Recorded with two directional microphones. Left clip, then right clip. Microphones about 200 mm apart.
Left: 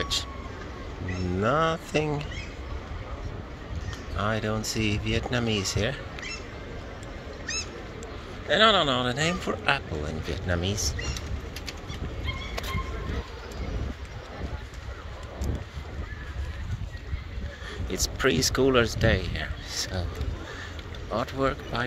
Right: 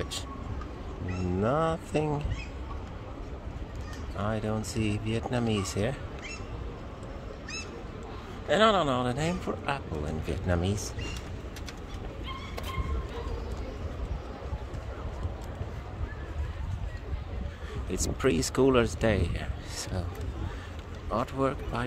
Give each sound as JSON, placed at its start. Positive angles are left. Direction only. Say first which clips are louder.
{"t": 0.1, "sound": "speech", "louder": "left 9 dB", "side_deg": -15}
{"t": 1.4, "sound": "speech", "louder": "left 4 dB", "side_deg": -10}
{"t": 4.2, "sound": "speech", "louder": "left 4 dB", "side_deg": -10}
{"t": 8.5, "sound": "speech", "louder": "left 3 dB", "side_deg": -15}
{"t": 10.2, "sound": "speech", "louder": "left 1 dB", "side_deg": -20}
{"t": 17.9, "sound": "speech", "louder": "left 3 dB", "side_deg": -15}
{"t": 21.1, "sound": "speech", "louder": "left 2 dB", "side_deg": -15}